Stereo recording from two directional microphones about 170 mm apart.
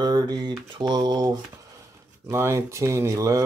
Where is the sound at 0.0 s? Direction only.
25° right (ahead or behind).